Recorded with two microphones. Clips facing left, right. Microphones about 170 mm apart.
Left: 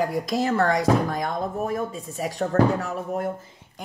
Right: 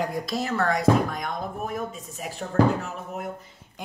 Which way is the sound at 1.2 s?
30° left (ahead or behind).